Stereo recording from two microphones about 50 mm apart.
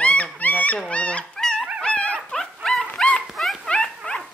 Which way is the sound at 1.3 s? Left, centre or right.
Centre.